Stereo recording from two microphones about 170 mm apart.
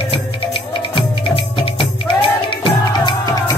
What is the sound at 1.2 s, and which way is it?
Music, 35° left (ahead or behind).